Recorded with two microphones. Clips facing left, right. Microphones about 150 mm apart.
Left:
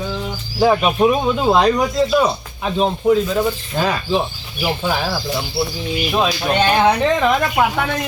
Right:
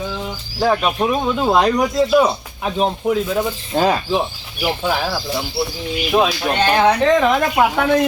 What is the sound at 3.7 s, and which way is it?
Speech, 30° right (ahead or behind).